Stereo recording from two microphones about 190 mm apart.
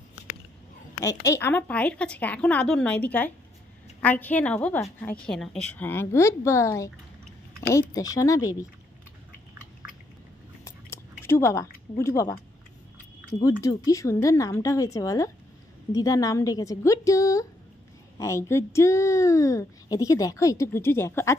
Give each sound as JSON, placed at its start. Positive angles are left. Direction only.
{"t": 1.0, "sound": "a woman's voice", "side_deg": 15}
{"t": 10.6, "sound": "a sound", "side_deg": 15}
{"t": 12.0, "sound": "a woman's voice", "side_deg": 15}
{"t": 13.6, "sound": "a woman's voice", "side_deg": 20}